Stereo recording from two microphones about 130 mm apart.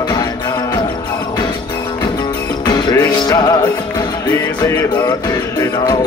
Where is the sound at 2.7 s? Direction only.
30° left (ahead or behind).